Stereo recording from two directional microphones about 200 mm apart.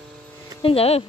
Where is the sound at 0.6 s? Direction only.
30° left (ahead or behind).